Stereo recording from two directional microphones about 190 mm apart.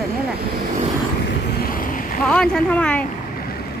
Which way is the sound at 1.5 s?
50° left (ahead or behind).